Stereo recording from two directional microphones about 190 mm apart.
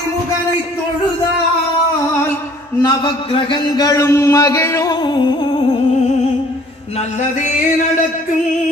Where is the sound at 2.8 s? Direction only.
25° left (ahead or behind).